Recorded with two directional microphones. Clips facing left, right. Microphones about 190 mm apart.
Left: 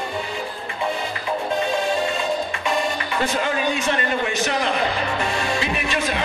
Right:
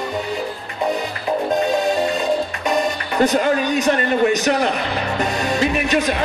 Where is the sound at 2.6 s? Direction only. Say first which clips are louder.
Right 3 dB; 40° right (ahead or behind).